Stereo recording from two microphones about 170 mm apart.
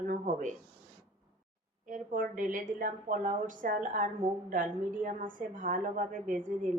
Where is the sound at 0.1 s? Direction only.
50° right (ahead or behind).